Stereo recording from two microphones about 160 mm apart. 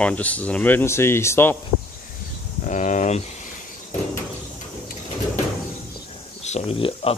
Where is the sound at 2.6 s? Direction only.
50° left (ahead or behind).